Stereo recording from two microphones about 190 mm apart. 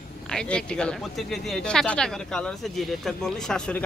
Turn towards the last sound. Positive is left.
turn(degrees=5)  # may be behind; listen again after turning